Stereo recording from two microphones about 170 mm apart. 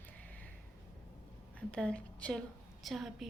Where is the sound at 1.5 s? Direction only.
5° left (ahead or behind).